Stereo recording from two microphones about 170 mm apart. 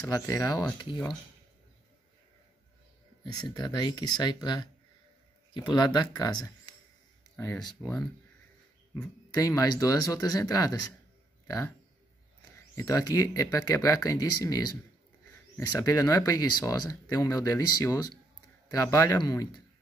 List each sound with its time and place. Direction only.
0.1 s speech: 20° left (ahead or behind)
3.4 s speech: 25° left (ahead or behind)
7.8 s speech: 10° left (ahead or behind)
12.7 s speech: 20° left (ahead or behind)